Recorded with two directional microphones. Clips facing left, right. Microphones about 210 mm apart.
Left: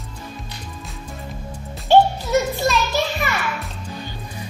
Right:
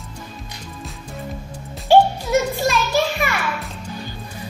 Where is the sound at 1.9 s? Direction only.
10° right (ahead or behind).